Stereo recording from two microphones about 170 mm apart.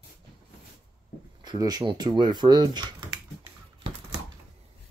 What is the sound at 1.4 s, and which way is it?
Speech, 25° right (ahead or behind).